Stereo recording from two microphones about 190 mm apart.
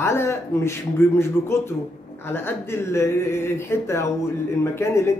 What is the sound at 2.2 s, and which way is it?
Speech, 10° left (ahead or behind).